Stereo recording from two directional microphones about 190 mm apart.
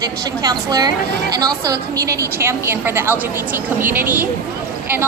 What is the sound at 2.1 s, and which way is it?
A woman's voice, 10° right (ahead or behind).